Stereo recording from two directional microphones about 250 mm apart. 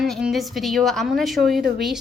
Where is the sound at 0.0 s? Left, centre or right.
Centre.